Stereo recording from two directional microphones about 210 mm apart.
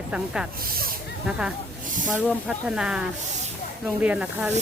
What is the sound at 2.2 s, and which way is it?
Speech, 5° right (ahead or behind).